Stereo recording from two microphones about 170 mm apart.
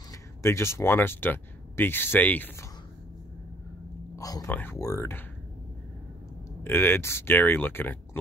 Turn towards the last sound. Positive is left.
turn(degrees=10)  # may be behind; listen again after turning